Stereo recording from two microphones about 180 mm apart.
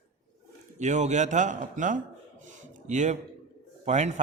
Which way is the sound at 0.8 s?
40° right (ahead or behind).